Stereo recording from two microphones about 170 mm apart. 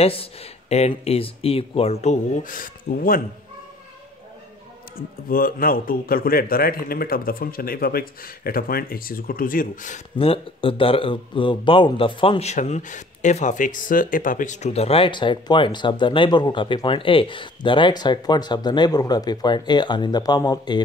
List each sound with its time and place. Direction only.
0.0 s speech: 35° left (ahead or behind); by 3.2 s 55° left (ahead or behind)
4.9 s a man's voice: 60° left (ahead or behind)
10.1 s speech: 30° left (ahead or behind)